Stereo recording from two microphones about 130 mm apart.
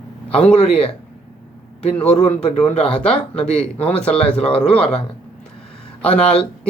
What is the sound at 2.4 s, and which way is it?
Speech, 50° left (ahead or behind).